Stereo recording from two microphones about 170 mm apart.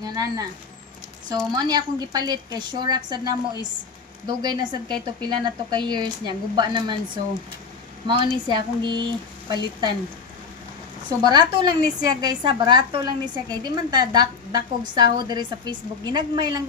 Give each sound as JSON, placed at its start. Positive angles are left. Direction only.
{"t": 0.0, "sound": "a woman's voice", "side_deg": -20}
{"t": 1.5, "sound": "a woman's voice", "side_deg": -25}
{"t": 8.1, "sound": "a woman's voice", "side_deg": -25}
{"t": 11.2, "sound": "a woman's voice", "side_deg": -25}